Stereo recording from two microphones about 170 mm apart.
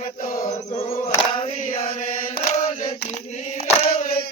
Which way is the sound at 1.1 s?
35° left (ahead or behind).